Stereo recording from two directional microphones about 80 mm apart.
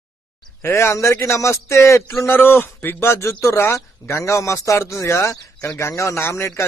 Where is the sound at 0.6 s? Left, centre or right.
Left.